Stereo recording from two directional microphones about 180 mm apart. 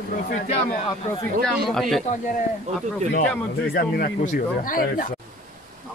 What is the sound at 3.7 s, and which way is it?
Speech, 55° left (ahead or behind).